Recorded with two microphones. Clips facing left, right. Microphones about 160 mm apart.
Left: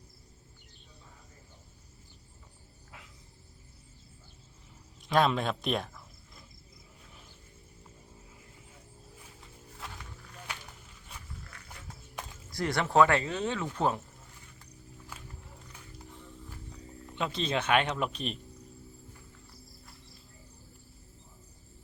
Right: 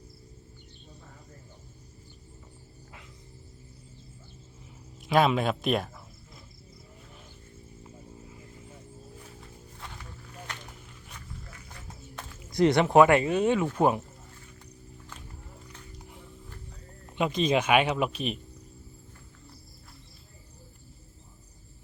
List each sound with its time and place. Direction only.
5.0 s speech: 5° right (ahead or behind)
10.5 s walk: 10° left (ahead or behind)
11.5 s music: 5° right (ahead or behind)
12.5 s speech: 20° right (ahead or behind)
15.1 s music: 10° left (ahead or behind)
17.2 s speech: 15° right (ahead or behind)